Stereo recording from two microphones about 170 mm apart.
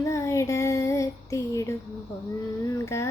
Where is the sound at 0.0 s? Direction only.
15° left (ahead or behind).